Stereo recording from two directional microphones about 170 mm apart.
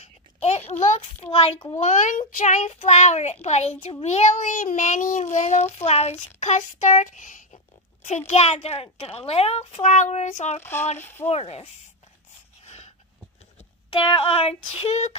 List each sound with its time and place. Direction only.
0.0 s a sound: 40° left (ahead or behind)
1.8 s child singing: 45° left (ahead or behind)
3.4 s a child's voice: 40° left (ahead or behind)
4.0 s child singing: 40° left (ahead or behind)
8.3 s a child's voice: 40° left (ahead or behind)
10.6 s speech: 15° left (ahead or behind)
11.2 s a child's voice: 35° left (ahead or behind)
12.6 s a sound: 40° left (ahead or behind)
14.7 s a child's voice: 35° left (ahead or behind)